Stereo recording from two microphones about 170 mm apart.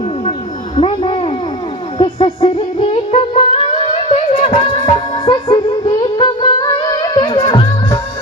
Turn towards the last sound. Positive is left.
turn(degrees=25)  # may be behind; listen again after turning